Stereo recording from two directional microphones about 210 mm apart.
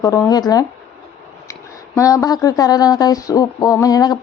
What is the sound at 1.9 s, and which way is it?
Speech, 15° left (ahead or behind).